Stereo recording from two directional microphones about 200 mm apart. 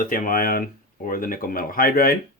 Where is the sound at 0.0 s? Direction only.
40° left (ahead or behind).